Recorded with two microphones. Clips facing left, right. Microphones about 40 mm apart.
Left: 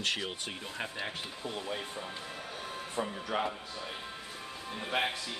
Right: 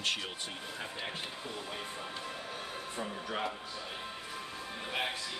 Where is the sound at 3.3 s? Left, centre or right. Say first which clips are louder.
Left 5 dB; centre.